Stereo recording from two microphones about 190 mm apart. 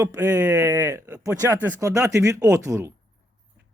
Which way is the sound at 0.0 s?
20° right (ahead or behind).